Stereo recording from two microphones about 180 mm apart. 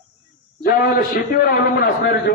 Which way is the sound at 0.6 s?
55° left (ahead or behind).